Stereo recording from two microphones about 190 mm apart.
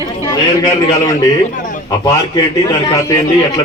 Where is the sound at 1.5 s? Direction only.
45° left (ahead or behind).